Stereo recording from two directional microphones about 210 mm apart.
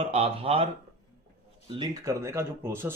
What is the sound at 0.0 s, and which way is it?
Speech, 25° right (ahead or behind).